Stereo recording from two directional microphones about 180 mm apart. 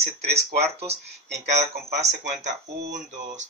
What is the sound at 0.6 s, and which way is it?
Speech, 35° right (ahead or behind).